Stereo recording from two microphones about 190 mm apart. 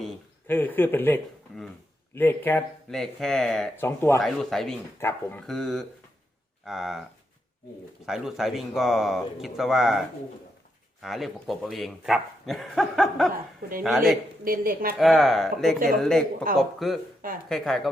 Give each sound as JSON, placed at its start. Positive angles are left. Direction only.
{"t": 0.4, "sound": "speech", "side_deg": 10}
{"t": 3.8, "sound": "speech", "side_deg": 15}
{"t": 4.2, "sound": "speech", "side_deg": 0}
{"t": 8.0, "sound": "speech", "side_deg": 0}
{"t": 11.0, "sound": "speech", "side_deg": 0}
{"t": 14.4, "sound": "speech", "side_deg": -50}
{"t": 14.9, "sound": "speech", "side_deg": 0}